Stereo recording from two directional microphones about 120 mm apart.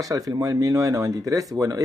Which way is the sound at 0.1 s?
30° right (ahead or behind).